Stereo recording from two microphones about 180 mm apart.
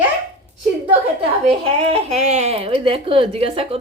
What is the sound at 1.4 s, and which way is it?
Speech, 35° right (ahead or behind).